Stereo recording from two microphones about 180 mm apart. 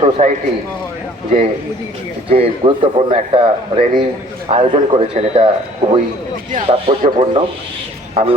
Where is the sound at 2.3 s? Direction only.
30° right (ahead or behind).